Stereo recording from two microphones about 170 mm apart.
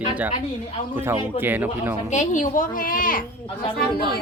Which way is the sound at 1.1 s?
15° right (ahead or behind).